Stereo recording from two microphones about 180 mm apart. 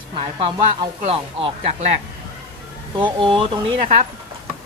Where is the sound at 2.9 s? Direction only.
25° right (ahead or behind).